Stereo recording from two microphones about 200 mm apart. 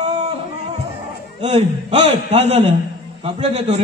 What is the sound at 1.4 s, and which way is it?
A man's voice, 30° right (ahead or behind).